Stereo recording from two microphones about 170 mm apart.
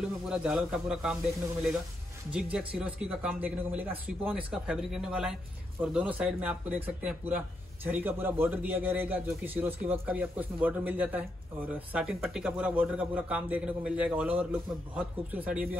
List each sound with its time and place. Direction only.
0.3 s a man's voice: 5° right (ahead or behind)
2.3 s a man's voice: 5° right (ahead or behind)